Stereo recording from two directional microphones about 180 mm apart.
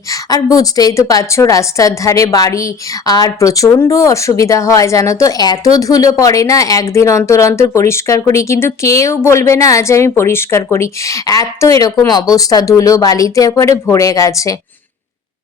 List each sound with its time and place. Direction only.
0.1 s a woman's voice: 20° left (ahead or behind)